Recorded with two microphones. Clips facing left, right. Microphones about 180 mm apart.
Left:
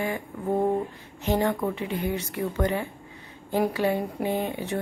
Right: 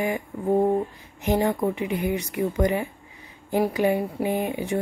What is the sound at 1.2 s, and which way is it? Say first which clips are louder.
A woman's voice: right 2 dB; 15° right (ahead or behind).